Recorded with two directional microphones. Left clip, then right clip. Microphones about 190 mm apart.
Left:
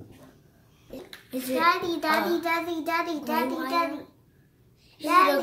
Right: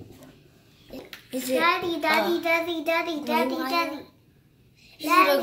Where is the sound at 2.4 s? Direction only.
30° left (ahead or behind).